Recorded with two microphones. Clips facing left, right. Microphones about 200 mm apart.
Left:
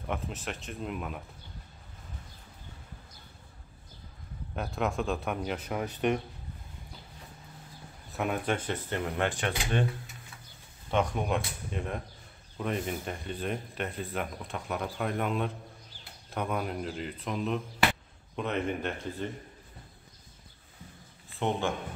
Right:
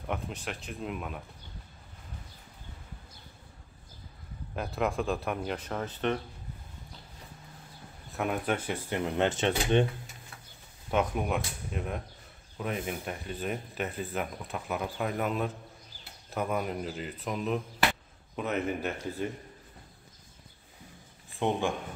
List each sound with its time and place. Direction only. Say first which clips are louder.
0.0 s speech: even; centre (ahead or behind)
4.6 s speech: right 1 dB; centre (ahead or behind)
5.7 s speech: left 3 dB; 15° left (ahead or behind)
8.2 s speech: even; 5° right (ahead or behind); by 9.8 s 20° right (ahead or behind)
10.9 s speech: even; 5° right (ahead or behind)
21.3 s speech: right 1 dB; 15° right (ahead or behind)